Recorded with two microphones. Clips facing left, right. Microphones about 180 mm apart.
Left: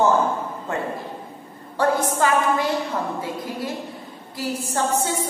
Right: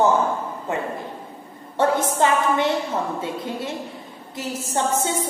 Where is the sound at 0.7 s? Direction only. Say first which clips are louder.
Right 1 dB; 20° right (ahead or behind).